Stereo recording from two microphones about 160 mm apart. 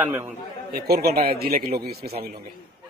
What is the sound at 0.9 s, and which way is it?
A man's voice, 75° right (ahead or behind).